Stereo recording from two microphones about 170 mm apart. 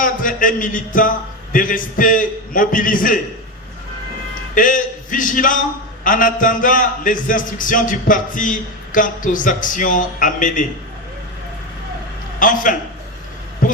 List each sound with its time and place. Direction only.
0.0 s a man's voice: 55° left (ahead or behind)
4.5 s a man's voice: 55° left (ahead or behind)
12.4 s a man's voice: 50° left (ahead or behind)